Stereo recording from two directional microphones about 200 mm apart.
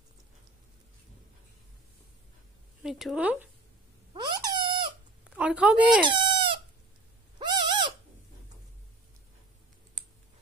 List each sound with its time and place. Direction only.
2.8 s speech: centre (ahead or behind)
4.1 s squeak: 20° right (ahead or behind)
5.3 s a woman's voice: 5° right (ahead or behind)
6.0 s chicken: 25° right (ahead or behind)
7.3 s bird: 20° right (ahead or behind)